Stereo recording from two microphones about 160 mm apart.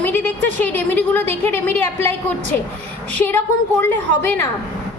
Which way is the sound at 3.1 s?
10° left (ahead or behind).